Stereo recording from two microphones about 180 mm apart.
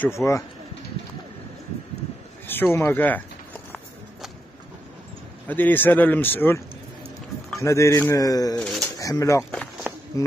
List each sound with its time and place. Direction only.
0.0 s speech: 15° left (ahead or behind)
2.4 s speech: 10° left (ahead or behind)
5.5 s speech: 10° left (ahead or behind)
7.6 s speech: 15° left (ahead or behind)
8.5 s speech: centre (ahead or behind)
8.9 s speech: 20° left (ahead or behind)
9.4 s speech: 5° left (ahead or behind)
10.2 s speech: 15° left (ahead or behind)